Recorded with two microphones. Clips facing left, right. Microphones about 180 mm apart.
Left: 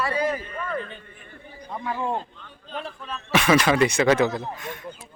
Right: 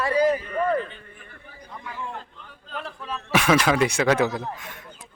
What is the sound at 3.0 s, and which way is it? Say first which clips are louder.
Speech: even; 5° right (ahead or behind).